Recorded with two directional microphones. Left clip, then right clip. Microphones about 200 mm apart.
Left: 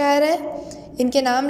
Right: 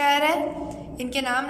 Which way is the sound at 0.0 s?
25° left (ahead or behind).